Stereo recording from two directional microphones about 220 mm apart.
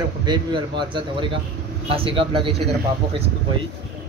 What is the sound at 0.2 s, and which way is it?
Speech, 20° right (ahead or behind).